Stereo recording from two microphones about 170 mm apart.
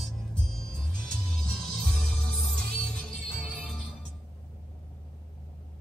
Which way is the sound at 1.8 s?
5° left (ahead or behind).